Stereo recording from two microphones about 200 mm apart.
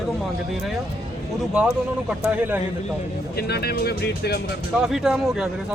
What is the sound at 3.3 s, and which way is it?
Speech, 50° left (ahead or behind).